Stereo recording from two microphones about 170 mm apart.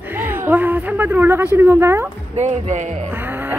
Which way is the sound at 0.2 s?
10° right (ahead or behind).